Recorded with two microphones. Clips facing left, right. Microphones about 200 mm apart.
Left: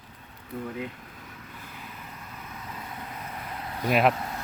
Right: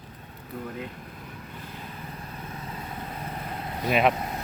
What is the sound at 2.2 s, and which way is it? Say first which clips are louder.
Vehicle: right 4 dB; 30° right (ahead or behind).